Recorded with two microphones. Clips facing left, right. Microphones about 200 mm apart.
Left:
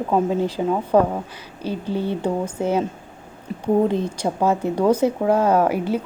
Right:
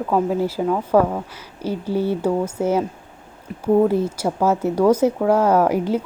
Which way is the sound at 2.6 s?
15° left (ahead or behind).